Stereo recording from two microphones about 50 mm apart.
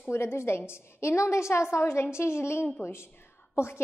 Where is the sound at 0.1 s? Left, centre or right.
Left.